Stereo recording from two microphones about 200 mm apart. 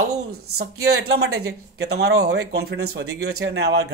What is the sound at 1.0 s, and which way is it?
Speech, 55° right (ahead or behind).